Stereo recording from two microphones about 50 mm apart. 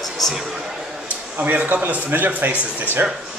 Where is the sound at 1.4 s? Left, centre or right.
Right.